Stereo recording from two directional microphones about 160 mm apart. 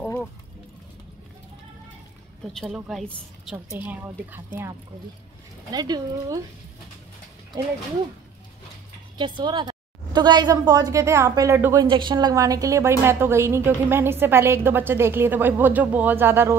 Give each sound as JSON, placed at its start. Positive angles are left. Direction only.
{"t": 2.5, "sound": "a woman's voice", "side_deg": 0}
{"t": 3.7, "sound": "a woman's voice", "side_deg": -10}
{"t": 5.7, "sound": "a woman's voice", "side_deg": -25}
{"t": 9.2, "sound": "a woman's voice", "side_deg": -30}
{"t": 11.9, "sound": "a woman's voice", "side_deg": -30}